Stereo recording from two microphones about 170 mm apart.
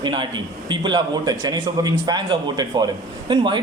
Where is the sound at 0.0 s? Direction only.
25° right (ahead or behind).